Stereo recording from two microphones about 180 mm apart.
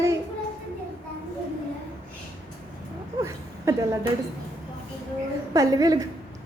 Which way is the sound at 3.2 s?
15° right (ahead or behind).